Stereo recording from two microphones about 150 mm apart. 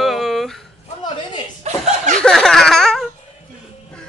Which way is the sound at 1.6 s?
45° right (ahead or behind).